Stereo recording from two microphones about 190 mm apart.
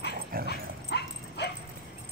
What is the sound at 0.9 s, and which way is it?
Bow-wow, 60° left (ahead or behind).